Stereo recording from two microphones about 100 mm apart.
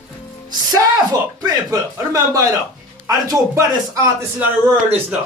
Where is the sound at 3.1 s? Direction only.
35° right (ahead or behind).